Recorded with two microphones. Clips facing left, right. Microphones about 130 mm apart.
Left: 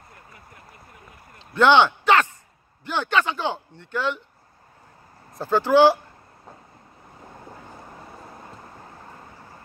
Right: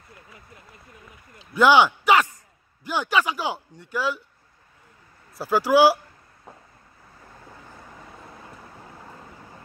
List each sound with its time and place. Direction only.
0.1 s vehicle: 20° right (ahead or behind)
1.4 s a sound: 10° right (ahead or behind)
2.8 s speech: 10° right (ahead or behind)
5.4 s speech: 10° right (ahead or behind)
7.2 s vehicle: 25° left (ahead or behind)